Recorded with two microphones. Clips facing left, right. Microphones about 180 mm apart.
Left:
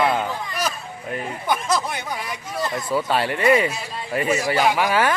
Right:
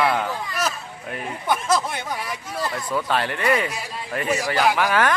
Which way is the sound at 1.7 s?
Centre (ahead or behind).